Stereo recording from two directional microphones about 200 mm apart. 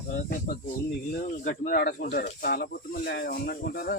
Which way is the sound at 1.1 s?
45° left (ahead or behind).